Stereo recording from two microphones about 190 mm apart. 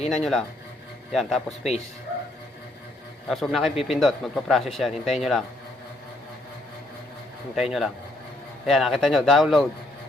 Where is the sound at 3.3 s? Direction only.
Centre (ahead or behind).